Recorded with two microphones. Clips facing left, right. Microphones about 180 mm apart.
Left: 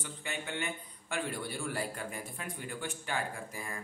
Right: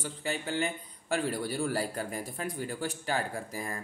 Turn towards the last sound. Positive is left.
turn(degrees=-40)  # may be behind; listen again after turning